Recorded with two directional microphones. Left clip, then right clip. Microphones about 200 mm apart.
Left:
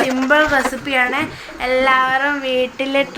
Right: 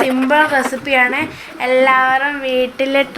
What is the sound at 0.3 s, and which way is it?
A woman's voice, centre (ahead or behind).